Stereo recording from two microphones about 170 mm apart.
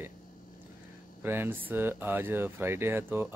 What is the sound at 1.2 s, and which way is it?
Speech, 15° right (ahead or behind).